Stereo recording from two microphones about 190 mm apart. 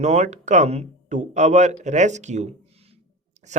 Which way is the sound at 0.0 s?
35° right (ahead or behind).